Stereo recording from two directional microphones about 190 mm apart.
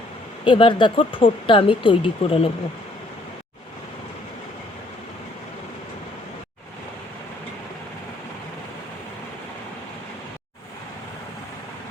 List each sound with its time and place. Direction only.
0.4 s speech: 25° left (ahead or behind)